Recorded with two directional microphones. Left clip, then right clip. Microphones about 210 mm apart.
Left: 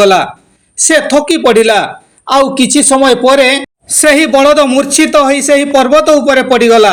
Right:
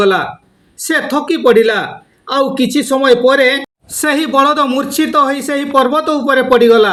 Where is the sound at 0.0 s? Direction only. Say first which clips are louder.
Left 5 dB; 15° left (ahead or behind).